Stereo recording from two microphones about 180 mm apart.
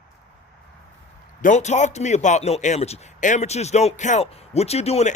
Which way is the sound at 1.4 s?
45° left (ahead or behind).